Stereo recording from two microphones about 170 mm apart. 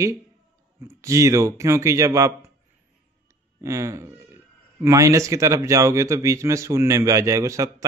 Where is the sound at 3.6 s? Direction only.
15° right (ahead or behind).